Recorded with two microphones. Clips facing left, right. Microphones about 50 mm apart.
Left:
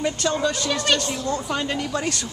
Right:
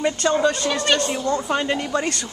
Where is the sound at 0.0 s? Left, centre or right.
Centre.